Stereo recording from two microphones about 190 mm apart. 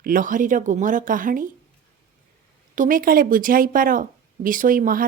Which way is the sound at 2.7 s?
45° right (ahead or behind).